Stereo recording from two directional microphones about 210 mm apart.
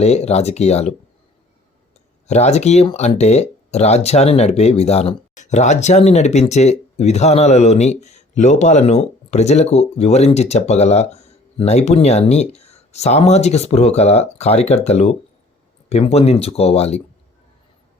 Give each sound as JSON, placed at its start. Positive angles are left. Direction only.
{"t": 0.0, "sound": "speech", "side_deg": 30}
{"t": 2.2, "sound": "speech", "side_deg": 30}